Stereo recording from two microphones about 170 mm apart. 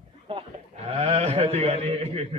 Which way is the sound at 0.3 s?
35° right (ahead or behind).